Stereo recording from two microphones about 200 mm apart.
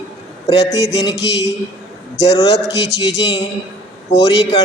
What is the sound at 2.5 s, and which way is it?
Speech, 60° left (ahead or behind).